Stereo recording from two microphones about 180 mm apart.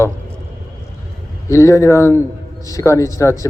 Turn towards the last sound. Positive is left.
turn(degrees=15)  # may be behind; listen again after turning